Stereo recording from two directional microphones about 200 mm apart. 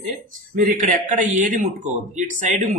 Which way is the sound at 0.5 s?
40° right (ahead or behind).